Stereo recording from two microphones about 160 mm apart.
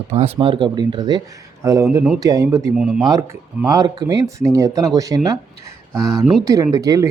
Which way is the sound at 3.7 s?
25° right (ahead or behind).